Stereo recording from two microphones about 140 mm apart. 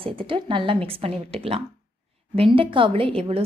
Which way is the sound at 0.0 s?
40° right (ahead or behind).